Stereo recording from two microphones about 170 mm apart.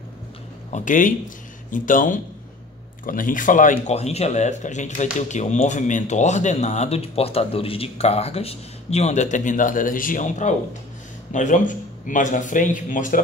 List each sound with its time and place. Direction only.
0.7 s speech: 45° left (ahead or behind)
3.8 s speech: 40° left (ahead or behind)